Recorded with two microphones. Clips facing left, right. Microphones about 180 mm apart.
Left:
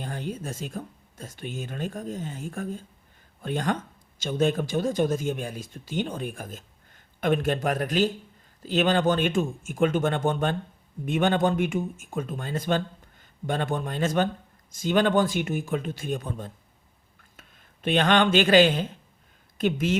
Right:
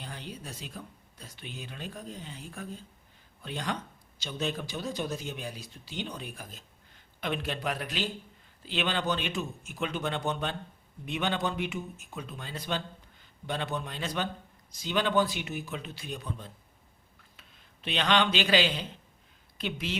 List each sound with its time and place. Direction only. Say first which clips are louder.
0.0 s speech: left 9 dB; 50° left (ahead or behind)
17.8 s speech: left 6 dB; 50° left (ahead or behind)